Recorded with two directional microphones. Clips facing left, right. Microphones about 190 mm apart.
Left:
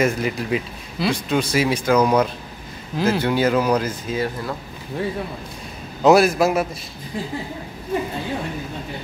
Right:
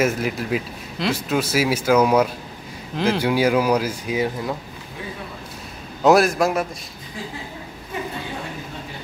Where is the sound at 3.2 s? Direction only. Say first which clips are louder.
Right 2 dB; 10° right (ahead or behind).